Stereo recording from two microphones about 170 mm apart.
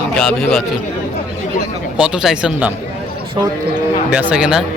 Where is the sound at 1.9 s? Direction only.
5° right (ahead or behind).